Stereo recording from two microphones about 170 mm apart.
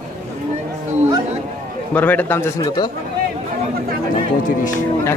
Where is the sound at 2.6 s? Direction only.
25° left (ahead or behind).